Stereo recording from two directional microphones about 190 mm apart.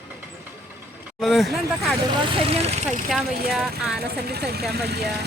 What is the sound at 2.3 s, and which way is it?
Speech, 30° right (ahead or behind).